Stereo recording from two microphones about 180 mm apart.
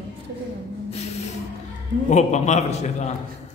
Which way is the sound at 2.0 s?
40° left (ahead or behind).